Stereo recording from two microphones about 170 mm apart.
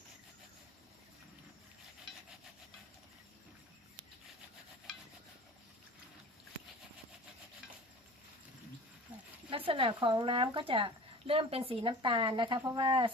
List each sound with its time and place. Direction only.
9.5 s speech: 30° right (ahead or behind)